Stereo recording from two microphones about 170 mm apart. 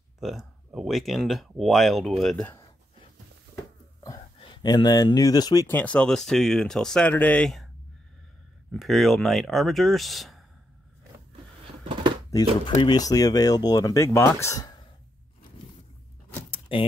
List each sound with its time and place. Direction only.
0.2 s speech: centre (ahead or behind)
4.0 s speech: 20° left (ahead or behind)
5.7 s speech: 10° left (ahead or behind)
8.7 s speech: centre (ahead or behind)
12.3 s speech: 20° left (ahead or behind)
16.4 s a sound: 30° left (ahead or behind)